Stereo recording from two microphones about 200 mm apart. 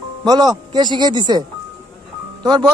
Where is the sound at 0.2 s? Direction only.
20° right (ahead or behind).